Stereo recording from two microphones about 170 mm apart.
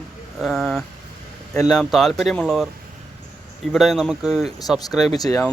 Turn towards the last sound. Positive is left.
turn(degrees=20)  # may be behind; listen again after turning